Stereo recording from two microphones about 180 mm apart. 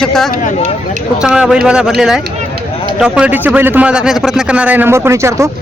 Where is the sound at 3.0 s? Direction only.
5° right (ahead or behind).